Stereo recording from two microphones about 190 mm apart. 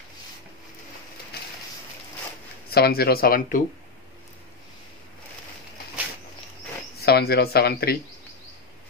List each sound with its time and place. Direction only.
1.3 s a sound: 55° left (ahead or behind)
2.7 s speech: 55° left (ahead or behind)
7.0 s speech: 55° left (ahead or behind)